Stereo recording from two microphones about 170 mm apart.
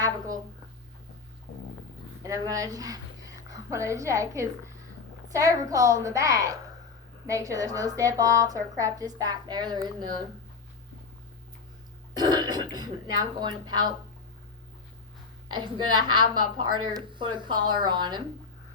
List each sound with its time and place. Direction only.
2.2 s a woman's voice: 20° right (ahead or behind)
12.1 s throat clearing: 25° right (ahead or behind)
13.4 s a woman's voice: 25° right (ahead or behind)
15.4 s a woman's voice: 25° right (ahead or behind)